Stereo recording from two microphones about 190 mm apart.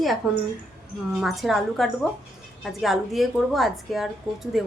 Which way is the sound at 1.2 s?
Centre (ahead or behind).